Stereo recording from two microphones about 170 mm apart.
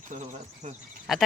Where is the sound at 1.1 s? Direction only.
Centre (ahead or behind).